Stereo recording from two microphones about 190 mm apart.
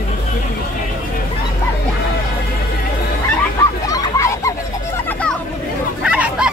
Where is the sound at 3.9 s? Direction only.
15° left (ahead or behind).